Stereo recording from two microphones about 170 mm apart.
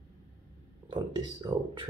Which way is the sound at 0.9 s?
30° right (ahead or behind).